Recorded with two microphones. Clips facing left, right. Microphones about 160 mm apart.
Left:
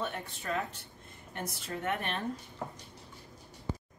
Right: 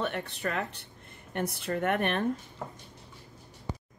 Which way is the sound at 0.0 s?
65° right (ahead or behind).